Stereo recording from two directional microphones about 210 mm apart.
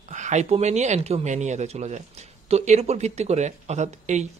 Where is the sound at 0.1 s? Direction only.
35° right (ahead or behind).